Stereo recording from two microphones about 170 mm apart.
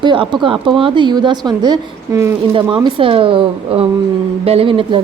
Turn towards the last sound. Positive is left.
turn(degrees=-30)  # may be behind; listen again after turning